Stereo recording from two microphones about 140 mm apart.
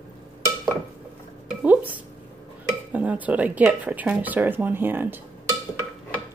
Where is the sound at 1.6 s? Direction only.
10° right (ahead or behind).